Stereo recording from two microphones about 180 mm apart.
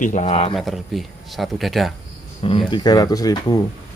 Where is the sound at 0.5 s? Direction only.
Centre (ahead or behind).